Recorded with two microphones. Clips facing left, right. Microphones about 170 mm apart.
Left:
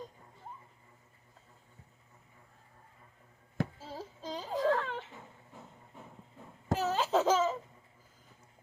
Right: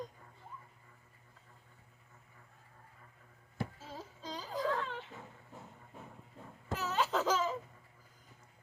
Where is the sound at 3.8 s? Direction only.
25° left (ahead or behind).